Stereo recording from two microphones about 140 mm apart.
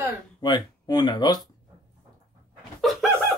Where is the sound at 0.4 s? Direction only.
30° left (ahead or behind).